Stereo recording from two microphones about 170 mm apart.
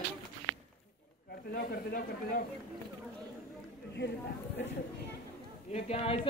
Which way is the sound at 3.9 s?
85° left.